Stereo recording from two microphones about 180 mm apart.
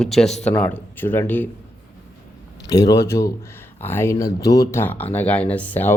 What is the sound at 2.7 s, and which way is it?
Speech, 20° left (ahead or behind).